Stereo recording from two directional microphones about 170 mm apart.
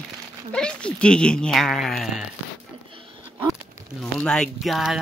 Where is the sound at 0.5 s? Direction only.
5° left (ahead or behind).